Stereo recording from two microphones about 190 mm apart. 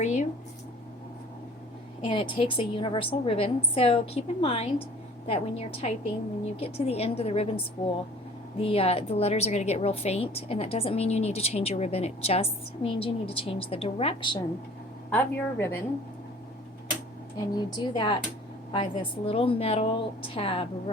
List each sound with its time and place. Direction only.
0.0 s a sound: 40° left (ahead or behind)
2.0 s a woman's voice: 25° left (ahead or behind)
8.5 s a woman's voice: 30° left (ahead or behind)
15.1 s speech: 10° left (ahead or behind)
17.5 s a woman's voice: 25° left (ahead or behind)